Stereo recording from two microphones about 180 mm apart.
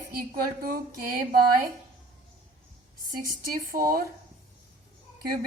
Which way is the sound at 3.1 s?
55° right (ahead or behind).